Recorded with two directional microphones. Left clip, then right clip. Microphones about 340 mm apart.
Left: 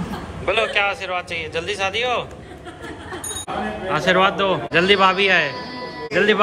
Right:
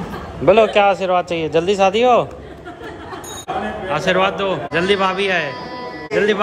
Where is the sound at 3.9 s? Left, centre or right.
Centre.